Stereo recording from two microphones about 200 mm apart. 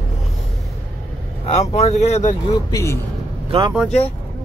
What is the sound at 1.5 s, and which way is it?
Speech, 30° left (ahead or behind).